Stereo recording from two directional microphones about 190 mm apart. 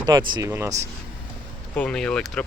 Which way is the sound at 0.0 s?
20° right (ahead or behind).